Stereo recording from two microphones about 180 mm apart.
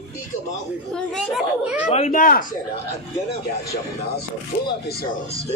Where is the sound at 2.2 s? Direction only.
50° left (ahead or behind).